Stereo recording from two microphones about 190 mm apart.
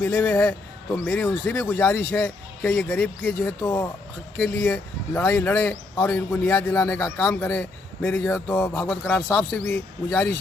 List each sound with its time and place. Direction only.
0.0 s speech: 15° left (ahead or behind)